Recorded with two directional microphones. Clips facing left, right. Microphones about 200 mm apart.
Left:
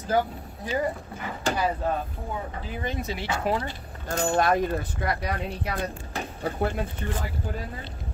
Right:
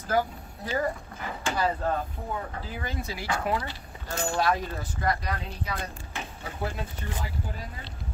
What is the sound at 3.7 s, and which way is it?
Speech, 50° left (ahead or behind).